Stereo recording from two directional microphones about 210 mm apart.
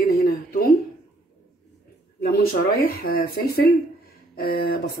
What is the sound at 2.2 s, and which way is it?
A woman's voice, 45° left (ahead or behind).